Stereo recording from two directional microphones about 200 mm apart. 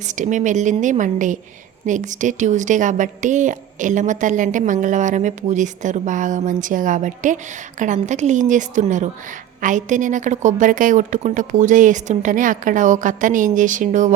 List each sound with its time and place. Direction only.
0.2 s speech: 40° right (ahead or behind)